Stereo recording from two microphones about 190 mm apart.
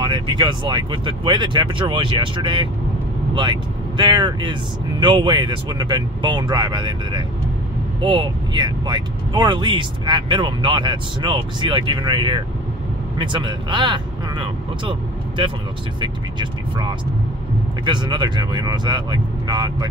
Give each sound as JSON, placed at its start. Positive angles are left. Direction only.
{"t": 0.0, "sound": "speech", "side_deg": -25}